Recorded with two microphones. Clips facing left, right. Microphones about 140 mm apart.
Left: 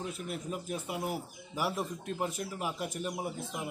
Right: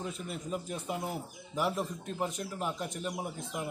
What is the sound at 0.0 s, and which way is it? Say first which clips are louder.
A man's voice: left 1 dB; 5° left (ahead or behind).